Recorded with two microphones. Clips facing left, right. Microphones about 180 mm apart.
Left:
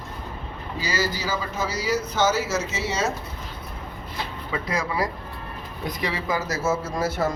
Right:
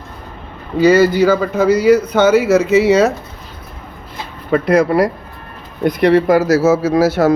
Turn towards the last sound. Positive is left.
turn(degrees=-75)  # may be behind; listen again after turning